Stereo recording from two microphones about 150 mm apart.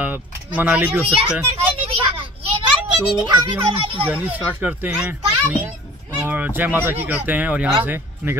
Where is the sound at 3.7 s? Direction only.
35° right (ahead or behind).